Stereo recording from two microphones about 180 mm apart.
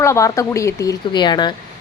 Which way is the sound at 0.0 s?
15° left (ahead or behind).